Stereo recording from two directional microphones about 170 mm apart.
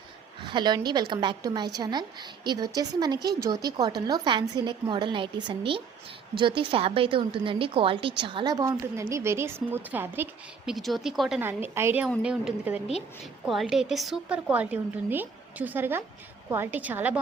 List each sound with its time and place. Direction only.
0.4 s a woman's voice: 25° right (ahead or behind)
10.7 s a woman's voice: centre (ahead or behind)
11.4 s a woman's voice: 15° right (ahead or behind)
12.0 s a woman's voice: 5° right (ahead or behind)